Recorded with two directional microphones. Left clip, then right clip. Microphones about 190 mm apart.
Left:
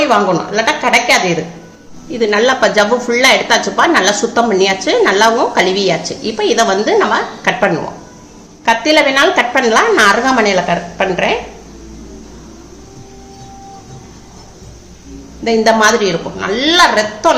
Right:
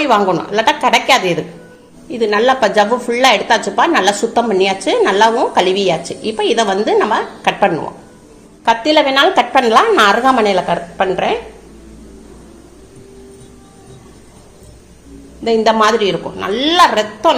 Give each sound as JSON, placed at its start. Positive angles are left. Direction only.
{"t": 0.0, "sound": "a woman's voice", "side_deg": -35}
{"t": 2.1, "sound": "a woman's voice", "side_deg": -30}
{"t": 15.4, "sound": "a woman's voice", "side_deg": -30}